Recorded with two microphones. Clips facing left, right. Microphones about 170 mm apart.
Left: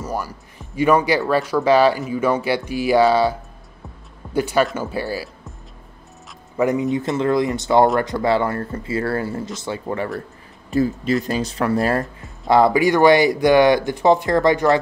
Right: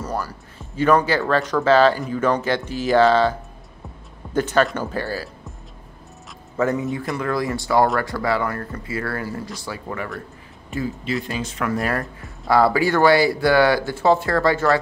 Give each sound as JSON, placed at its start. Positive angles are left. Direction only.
{"t": 0.0, "sound": "speech", "side_deg": 10}
{"t": 6.5, "sound": "speech", "side_deg": 15}
{"t": 10.7, "sound": "speech", "side_deg": 40}
{"t": 12.0, "sound": "speech", "side_deg": 20}